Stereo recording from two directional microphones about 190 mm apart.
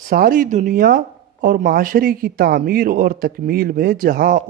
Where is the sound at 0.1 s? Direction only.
50° right (ahead or behind).